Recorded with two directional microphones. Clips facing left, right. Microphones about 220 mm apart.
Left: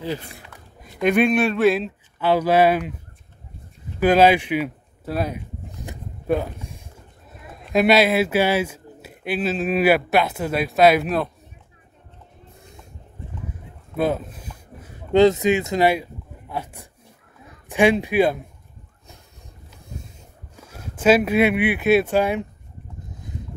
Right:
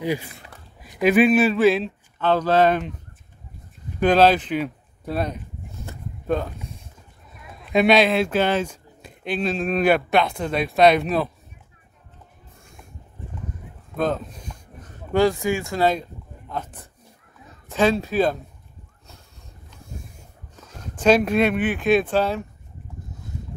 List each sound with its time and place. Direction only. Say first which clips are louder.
0.0 s speech: right 3 dB; 10° right (ahead or behind)
2.1 s speech: left 1 dB; 10° left (ahead or behind)
4.0 s speech: left 1 dB; 10° left (ahead or behind)
5.7 s vehicle: left 1 dB; 15° left (ahead or behind)
7.7 s speech: even; 5° left (ahead or behind)
13.9 s a sound: left 2 dB; 10° left (ahead or behind)
15.1 s speech: left 4 dB; 20° left (ahead or behind)
20.5 s speech: left 1 dB; 10° left (ahead or behind)